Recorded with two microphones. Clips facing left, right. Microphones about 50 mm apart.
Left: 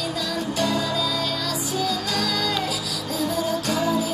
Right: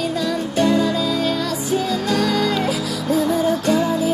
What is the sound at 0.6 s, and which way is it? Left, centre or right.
Music, right.